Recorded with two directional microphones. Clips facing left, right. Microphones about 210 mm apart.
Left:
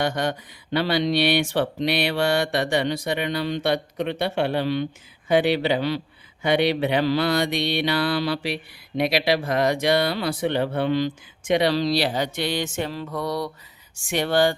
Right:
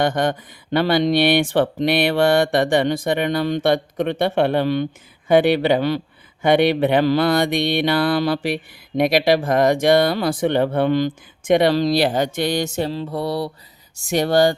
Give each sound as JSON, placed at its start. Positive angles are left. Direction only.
{"t": 0.0, "sound": "mantra", "side_deg": -50}
{"t": 13.9, "sound": "speech", "side_deg": -40}